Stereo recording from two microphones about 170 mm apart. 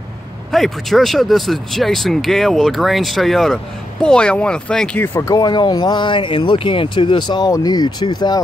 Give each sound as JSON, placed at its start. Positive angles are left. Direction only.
{"t": 0.5, "sound": "speech", "side_deg": 0}